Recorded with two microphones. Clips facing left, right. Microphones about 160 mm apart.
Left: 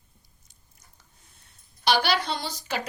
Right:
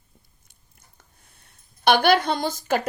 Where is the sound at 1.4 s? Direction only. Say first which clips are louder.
Right 5 dB; 55° right (ahead or behind).